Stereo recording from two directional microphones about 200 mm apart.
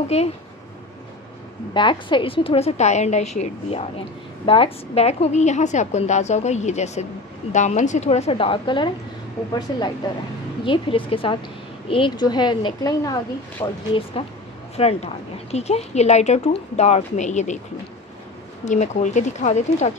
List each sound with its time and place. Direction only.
0.1 s a woman's voice: 30° left (ahead or behind)
1.7 s a woman's voice: 25° left (ahead or behind)
10.6 s a woman's voice: 25° left (ahead or behind)
18.7 s a woman's voice: 35° left (ahead or behind)